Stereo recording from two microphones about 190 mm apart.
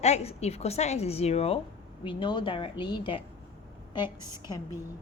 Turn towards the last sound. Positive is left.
turn(degrees=25)  # may be behind; listen again after turning